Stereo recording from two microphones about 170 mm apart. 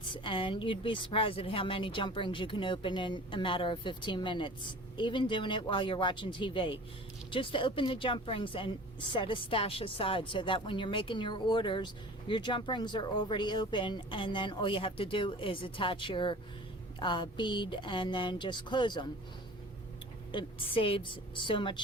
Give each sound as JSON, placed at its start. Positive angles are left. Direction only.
{"t": 0.1, "sound": "speech", "side_deg": 30}
{"t": 20.3, "sound": "speech", "side_deg": 30}